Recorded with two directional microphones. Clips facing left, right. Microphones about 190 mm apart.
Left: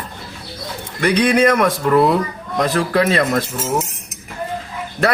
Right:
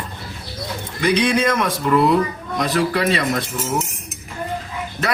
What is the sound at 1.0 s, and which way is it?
Speech, 60° left (ahead or behind).